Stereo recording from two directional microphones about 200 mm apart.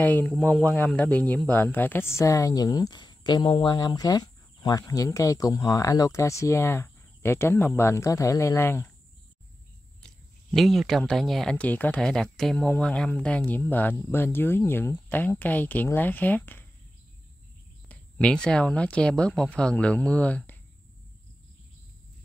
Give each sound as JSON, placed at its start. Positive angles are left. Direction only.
{"t": 0.0, "sound": "speech", "side_deg": 10}
{"t": 10.0, "sound": "speech", "side_deg": 0}
{"t": 17.8, "sound": "speech", "side_deg": 5}